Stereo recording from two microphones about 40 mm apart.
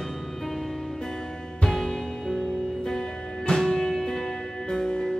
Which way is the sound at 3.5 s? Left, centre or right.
Centre.